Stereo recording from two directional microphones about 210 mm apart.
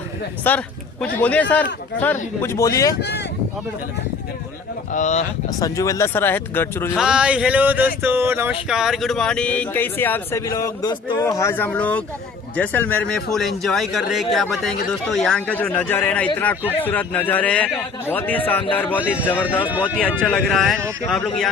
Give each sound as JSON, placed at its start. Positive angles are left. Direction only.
{"t": 0.4, "sound": "speech", "side_deg": 10}
{"t": 4.9, "sound": "speech", "side_deg": 35}
{"t": 5.5, "sound": "speech", "side_deg": 15}
{"t": 6.9, "sound": "a sound", "side_deg": -5}
{"t": 15.0, "sound": "speech", "side_deg": 0}
{"t": 19.8, "sound": "a sound", "side_deg": 5}